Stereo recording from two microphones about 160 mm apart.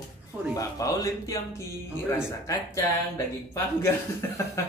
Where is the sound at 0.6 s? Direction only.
20° left (ahead or behind).